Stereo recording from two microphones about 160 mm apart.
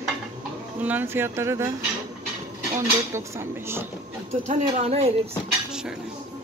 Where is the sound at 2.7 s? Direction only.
15° right (ahead or behind).